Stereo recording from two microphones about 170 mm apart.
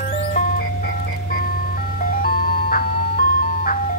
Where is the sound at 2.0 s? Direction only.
60° left (ahead or behind).